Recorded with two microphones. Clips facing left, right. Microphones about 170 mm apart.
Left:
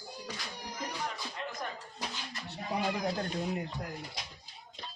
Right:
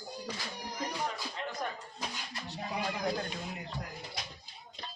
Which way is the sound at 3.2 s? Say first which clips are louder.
Left 6 dB; 45° left (ahead or behind).